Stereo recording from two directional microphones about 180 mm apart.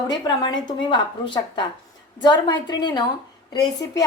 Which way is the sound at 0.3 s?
25° left (ahead or behind).